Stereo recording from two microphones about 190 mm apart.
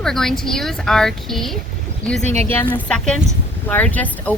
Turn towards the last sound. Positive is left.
turn(degrees=10)  # may be behind; listen again after turning